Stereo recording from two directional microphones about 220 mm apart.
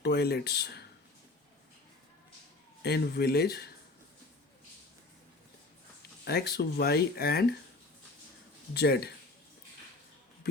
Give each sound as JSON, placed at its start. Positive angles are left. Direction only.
{"t": 0.0, "sound": "speech", "side_deg": 50}
{"t": 2.8, "sound": "speech", "side_deg": 45}
{"t": 6.2, "sound": "speech", "side_deg": 45}
{"t": 8.7, "sound": "speech", "side_deg": 45}